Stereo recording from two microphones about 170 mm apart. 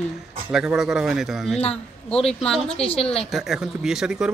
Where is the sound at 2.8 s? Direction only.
35° left (ahead or behind).